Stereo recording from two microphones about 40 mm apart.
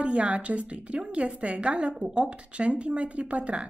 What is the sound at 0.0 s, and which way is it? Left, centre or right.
A woman's voice, right.